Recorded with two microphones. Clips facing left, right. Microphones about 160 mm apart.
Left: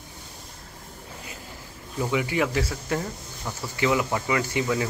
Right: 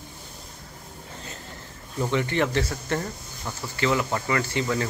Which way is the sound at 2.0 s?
10° left (ahead or behind).